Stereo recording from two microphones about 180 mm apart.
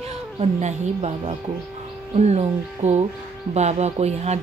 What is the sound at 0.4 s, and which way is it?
Speech, 40° right (ahead or behind).